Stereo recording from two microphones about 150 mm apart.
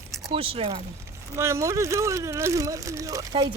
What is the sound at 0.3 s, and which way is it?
Speech, 40° right (ahead or behind).